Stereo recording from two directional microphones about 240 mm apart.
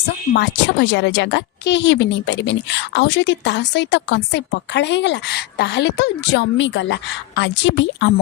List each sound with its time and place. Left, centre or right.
0.3 s a woman's voice: left